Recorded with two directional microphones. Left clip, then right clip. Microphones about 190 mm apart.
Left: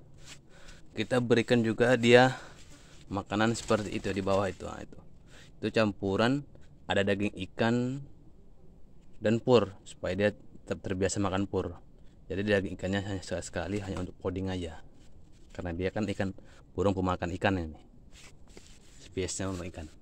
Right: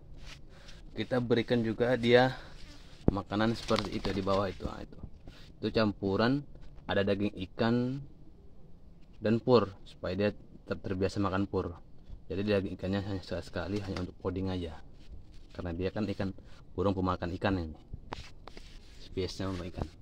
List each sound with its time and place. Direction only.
0.9 s speech: 25° left (ahead or behind)
3.2 s a man's voice: 10° left (ahead or behind)
9.2 s a man's voice: 10° left (ahead or behind)
19.1 s a man's voice: 10° left (ahead or behind)